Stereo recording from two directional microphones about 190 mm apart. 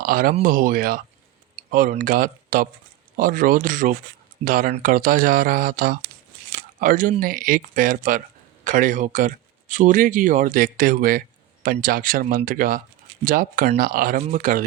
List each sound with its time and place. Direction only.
0.0 s speech: 50° right (ahead or behind)